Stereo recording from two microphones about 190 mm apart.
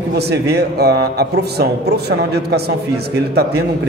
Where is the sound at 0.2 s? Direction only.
60° right (ahead or behind).